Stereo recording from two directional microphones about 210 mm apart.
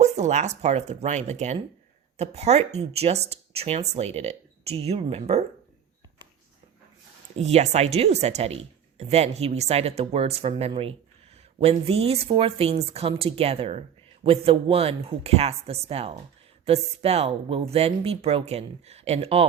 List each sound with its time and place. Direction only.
0.0 s speech: 30° right (ahead or behind)
7.3 s speech: 30° right (ahead or behind)